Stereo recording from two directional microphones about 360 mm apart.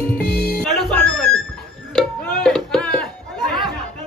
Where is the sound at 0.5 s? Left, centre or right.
Centre.